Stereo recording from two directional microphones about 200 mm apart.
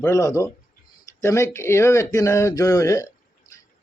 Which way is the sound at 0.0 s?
15° left (ahead or behind).